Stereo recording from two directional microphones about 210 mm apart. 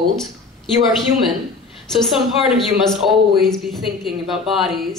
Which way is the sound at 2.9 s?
Centre (ahead or behind).